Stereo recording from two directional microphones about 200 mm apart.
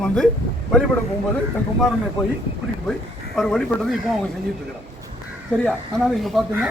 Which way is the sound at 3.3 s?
Centre (ahead or behind).